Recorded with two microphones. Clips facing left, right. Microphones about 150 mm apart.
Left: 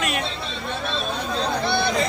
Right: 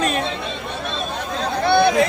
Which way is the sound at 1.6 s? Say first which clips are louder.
Right 10 dB; 60° right (ahead or behind).